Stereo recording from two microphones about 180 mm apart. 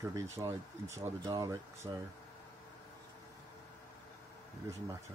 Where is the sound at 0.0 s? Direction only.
15° right (ahead or behind).